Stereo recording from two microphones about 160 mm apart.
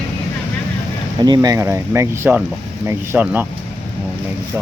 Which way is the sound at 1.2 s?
25° right (ahead or behind).